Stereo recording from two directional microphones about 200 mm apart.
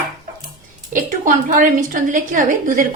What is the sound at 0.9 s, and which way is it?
A woman's voice, 40° right (ahead or behind).